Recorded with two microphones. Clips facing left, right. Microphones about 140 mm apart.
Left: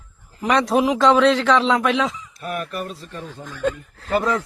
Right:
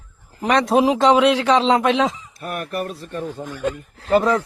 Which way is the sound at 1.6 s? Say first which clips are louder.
Right 2 dB; 25° right (ahead or behind).